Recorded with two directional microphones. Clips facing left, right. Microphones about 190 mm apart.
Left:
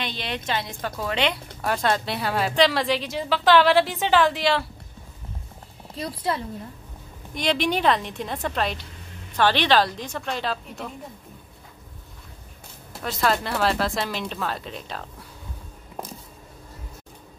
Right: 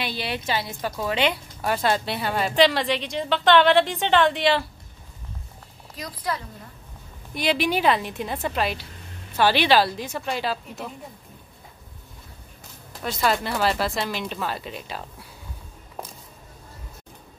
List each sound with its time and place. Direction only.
0.0 s a woman's voice: 5° right (ahead or behind)
5.9 s a woman's voice: 25° left (ahead or behind)
7.3 s a woman's voice: 5° right (ahead or behind)
13.0 s a woman's voice: centre (ahead or behind)